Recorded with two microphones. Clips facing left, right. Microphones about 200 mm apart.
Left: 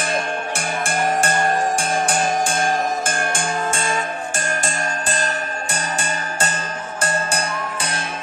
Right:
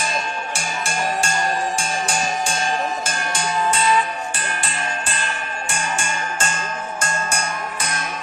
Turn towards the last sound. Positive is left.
turn(degrees=35)  # may be behind; listen again after turning